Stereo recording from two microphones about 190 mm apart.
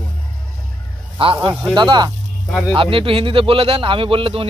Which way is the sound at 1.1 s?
25° right (ahead or behind).